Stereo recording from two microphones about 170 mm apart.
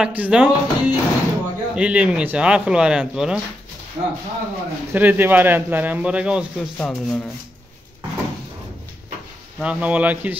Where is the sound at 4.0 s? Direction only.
30° right (ahead or behind).